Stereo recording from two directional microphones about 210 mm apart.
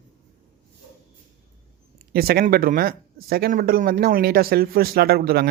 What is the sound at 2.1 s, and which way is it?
Speech, 45° right (ahead or behind).